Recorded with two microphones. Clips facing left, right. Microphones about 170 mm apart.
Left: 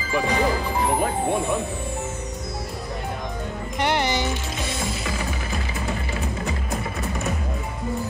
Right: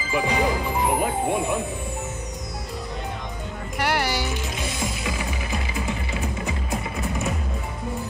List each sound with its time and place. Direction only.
0.1 s speech: 10° right (ahead or behind)
3.8 s music: 5° right (ahead or behind)